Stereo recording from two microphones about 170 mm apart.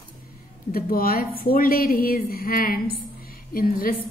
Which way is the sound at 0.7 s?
60° left (ahead or behind).